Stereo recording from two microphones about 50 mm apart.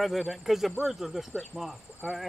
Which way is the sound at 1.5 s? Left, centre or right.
Left.